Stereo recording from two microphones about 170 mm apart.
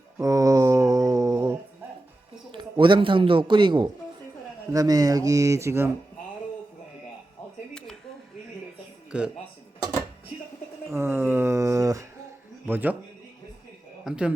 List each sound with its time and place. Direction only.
0.2 s mantra: 20° right (ahead or behind)
2.5 s a man's voice: 30° right (ahead or behind)
7.7 s a sound: 5° left (ahead or behind)
9.1 s a man's voice: 5° right (ahead or behind)
10.9 s a sound: 15° right (ahead or behind)
12.6 s a man's voice: 10° right (ahead or behind)
14.0 s speech: 5° right (ahead or behind)